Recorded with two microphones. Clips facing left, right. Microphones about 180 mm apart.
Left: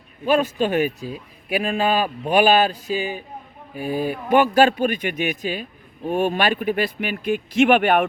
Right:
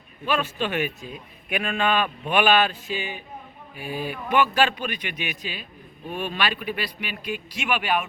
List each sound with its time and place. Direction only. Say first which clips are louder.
0.3 s speech: left 7 dB; 40° left (ahead or behind)